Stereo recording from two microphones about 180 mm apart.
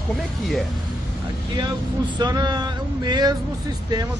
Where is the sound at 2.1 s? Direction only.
25° right (ahead or behind).